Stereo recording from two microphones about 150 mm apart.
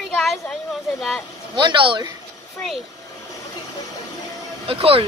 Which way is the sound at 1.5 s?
30° right (ahead or behind).